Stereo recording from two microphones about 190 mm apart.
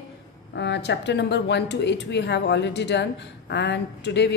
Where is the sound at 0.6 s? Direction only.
65° left (ahead or behind).